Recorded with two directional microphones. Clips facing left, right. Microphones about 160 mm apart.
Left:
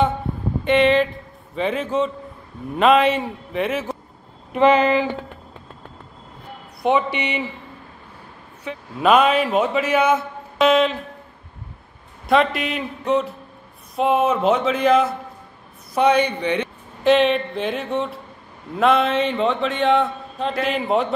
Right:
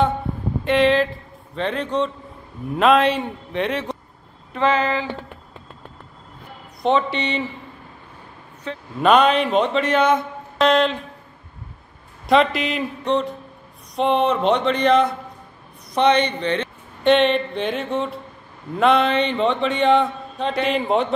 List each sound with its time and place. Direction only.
0.7 s a man's voice: centre (ahead or behind)
4.5 s a man's voice: 15° left (ahead or behind)
6.8 s a man's voice: 10° left (ahead or behind)
8.6 s a man's voice: 5° left (ahead or behind)
12.3 s a man's voice: centre (ahead or behind)
17.0 s a man's voice: centre (ahead or behind)